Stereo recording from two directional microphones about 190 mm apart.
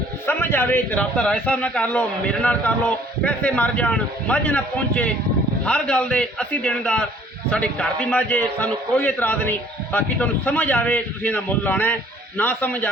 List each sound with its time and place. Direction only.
0.3 s a man's voice: 10° left (ahead or behind)